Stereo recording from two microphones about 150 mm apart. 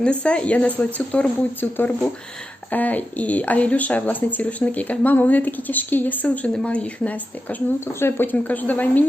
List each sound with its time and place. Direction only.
0.0 s speech: 5° left (ahead or behind)